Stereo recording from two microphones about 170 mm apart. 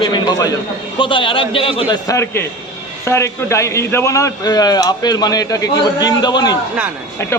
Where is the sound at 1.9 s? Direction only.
20° left (ahead or behind).